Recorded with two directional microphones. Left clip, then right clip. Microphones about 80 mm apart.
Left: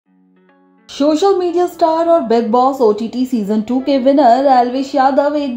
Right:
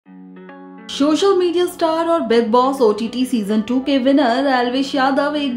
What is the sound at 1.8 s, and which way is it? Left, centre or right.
A woman's voice, centre.